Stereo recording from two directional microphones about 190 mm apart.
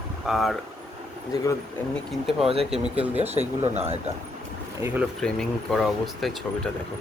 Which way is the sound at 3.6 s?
35° right (ahead or behind).